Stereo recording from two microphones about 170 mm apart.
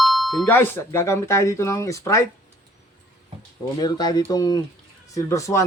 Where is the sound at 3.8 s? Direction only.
25° left (ahead or behind).